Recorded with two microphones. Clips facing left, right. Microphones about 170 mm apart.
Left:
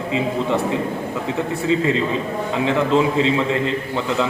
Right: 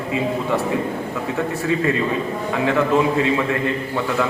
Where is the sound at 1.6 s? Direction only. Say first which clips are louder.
Left 2 dB; 20° left (ahead or behind).